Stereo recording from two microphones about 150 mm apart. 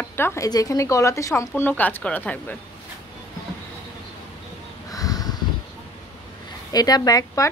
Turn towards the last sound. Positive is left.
turn(degrees=25)  # may be behind; listen again after turning